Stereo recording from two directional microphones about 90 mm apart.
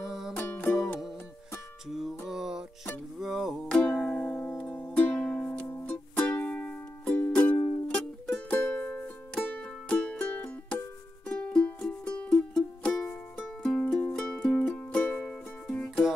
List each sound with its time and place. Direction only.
0.0 s music: 5° right (ahead or behind)
1.9 s music: 5° right (ahead or behind)
3.6 s music: 10° left (ahead or behind)
5.7 s music: 15° left (ahead or behind)
7.9 s music: 10° left (ahead or behind)